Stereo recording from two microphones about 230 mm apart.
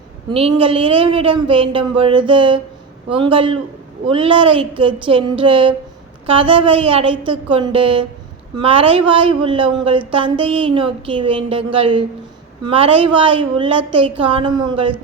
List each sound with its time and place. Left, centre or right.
0.3 s speech: right